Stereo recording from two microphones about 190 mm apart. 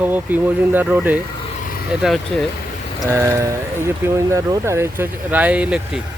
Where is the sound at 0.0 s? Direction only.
10° right (ahead or behind).